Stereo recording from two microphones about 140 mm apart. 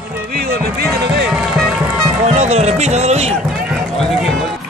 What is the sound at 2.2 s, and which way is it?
Music, 50° right (ahead or behind).